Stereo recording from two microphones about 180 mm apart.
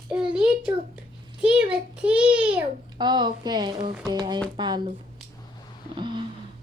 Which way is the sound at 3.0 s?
25° right (ahead or behind).